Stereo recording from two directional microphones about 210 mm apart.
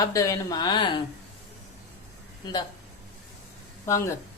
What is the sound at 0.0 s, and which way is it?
Speech, 15° left (ahead or behind).